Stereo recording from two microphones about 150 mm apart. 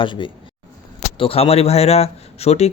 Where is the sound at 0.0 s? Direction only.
35° left (ahead or behind).